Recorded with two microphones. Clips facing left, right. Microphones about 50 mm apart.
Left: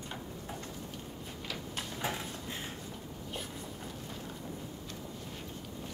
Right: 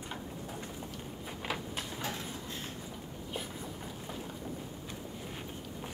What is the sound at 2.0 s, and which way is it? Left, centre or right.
Dishes, left.